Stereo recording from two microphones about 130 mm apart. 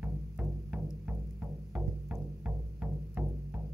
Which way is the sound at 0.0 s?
10° right (ahead or behind).